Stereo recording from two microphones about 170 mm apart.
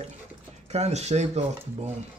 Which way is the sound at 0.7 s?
40° right (ahead or behind).